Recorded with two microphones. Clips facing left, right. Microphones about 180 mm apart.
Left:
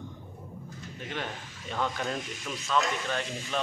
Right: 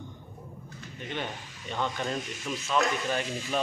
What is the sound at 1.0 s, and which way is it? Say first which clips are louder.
Speech: right 1 dB; centre (ahead or behind).